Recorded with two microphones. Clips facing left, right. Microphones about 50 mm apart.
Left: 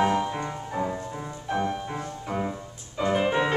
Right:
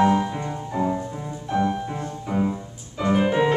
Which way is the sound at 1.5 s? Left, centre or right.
Centre.